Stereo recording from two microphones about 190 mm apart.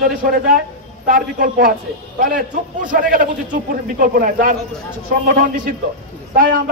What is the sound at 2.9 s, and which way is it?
Speech, 45° right (ahead or behind).